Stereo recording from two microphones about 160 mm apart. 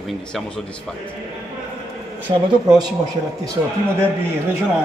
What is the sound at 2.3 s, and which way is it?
Speech, 30° right (ahead or behind).